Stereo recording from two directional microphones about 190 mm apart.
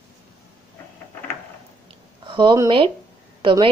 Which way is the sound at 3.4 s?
25° right (ahead or behind).